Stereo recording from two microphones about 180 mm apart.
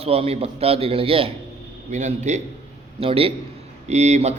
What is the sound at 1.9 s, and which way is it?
A man's voice, 40° right (ahead or behind).